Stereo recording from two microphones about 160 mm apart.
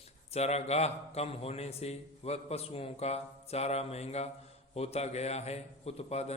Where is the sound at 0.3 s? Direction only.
40° left (ahead or behind).